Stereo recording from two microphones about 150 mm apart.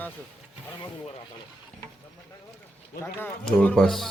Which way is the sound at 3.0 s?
15° left (ahead or behind).